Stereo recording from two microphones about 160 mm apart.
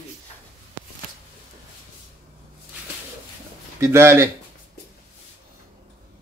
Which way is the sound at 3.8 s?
15° right (ahead or behind).